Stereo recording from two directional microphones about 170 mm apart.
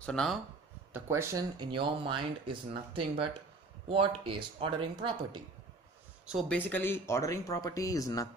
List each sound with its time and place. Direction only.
0.0 s speech: 5° left (ahead or behind)
0.9 s speech: 15° right (ahead or behind)
6.5 s speech: 10° left (ahead or behind)